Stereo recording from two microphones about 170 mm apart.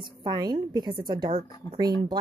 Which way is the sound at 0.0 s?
25° right (ahead or behind).